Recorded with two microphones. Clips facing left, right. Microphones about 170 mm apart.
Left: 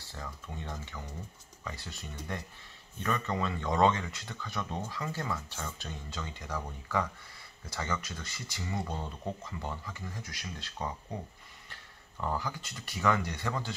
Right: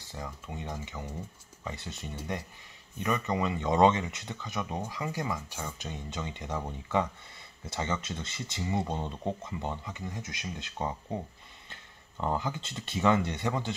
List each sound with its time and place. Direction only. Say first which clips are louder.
0.0 s speech: right 3 dB; 15° right (ahead or behind)